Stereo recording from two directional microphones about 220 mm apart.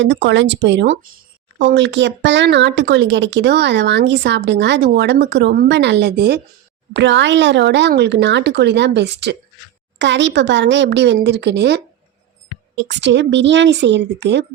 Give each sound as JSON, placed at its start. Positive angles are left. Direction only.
{"t": 0.0, "sound": "speech", "side_deg": -55}